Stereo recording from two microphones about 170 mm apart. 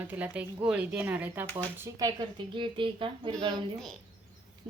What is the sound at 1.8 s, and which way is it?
Speech, 20° right (ahead or behind).